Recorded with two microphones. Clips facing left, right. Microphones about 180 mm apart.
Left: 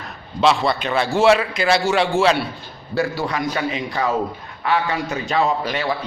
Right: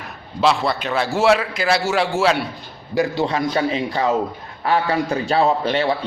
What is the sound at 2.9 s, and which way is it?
A man's voice, 20° right (ahead or behind).